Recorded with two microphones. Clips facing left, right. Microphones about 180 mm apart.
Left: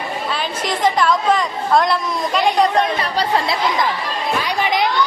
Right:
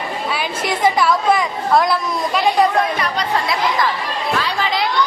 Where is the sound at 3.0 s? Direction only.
30° left (ahead or behind).